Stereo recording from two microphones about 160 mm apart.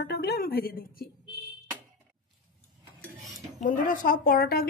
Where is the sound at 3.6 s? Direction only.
55° left (ahead or behind).